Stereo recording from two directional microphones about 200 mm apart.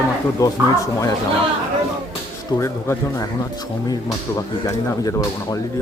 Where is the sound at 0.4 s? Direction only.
15° left (ahead or behind).